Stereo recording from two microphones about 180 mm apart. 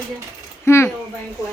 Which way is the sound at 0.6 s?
15° left (ahead or behind).